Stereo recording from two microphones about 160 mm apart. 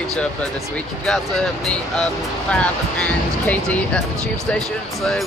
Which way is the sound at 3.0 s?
5° left (ahead or behind).